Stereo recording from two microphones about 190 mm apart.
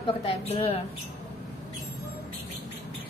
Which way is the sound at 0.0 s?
30° left (ahead or behind).